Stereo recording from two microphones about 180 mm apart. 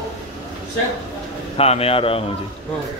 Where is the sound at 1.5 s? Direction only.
35° left (ahead or behind).